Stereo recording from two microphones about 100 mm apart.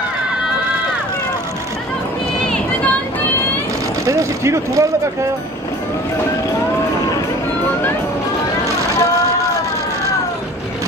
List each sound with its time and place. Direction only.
4.0 s speech: 30° right (ahead or behind)